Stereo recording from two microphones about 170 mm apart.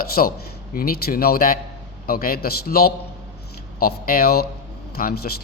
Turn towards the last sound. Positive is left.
turn(degrees=60)  # may be behind; listen again after turning